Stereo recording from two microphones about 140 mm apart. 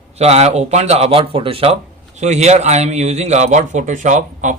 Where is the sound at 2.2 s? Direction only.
55° right (ahead or behind).